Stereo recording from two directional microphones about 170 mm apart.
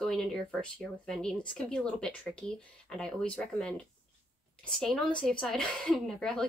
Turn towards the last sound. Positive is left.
turn(degrees=5)  # may be behind; listen again after turning